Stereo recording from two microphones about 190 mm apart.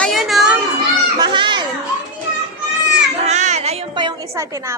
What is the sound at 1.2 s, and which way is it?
Children playing, 25° right (ahead or behind).